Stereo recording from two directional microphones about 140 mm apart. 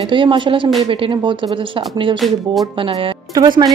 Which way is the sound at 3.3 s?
25° right (ahead or behind).